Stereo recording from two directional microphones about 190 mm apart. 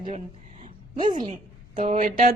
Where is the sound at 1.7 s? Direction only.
45° right (ahead or behind).